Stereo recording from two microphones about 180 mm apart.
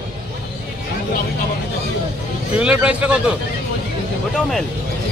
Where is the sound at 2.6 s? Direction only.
5° right (ahead or behind).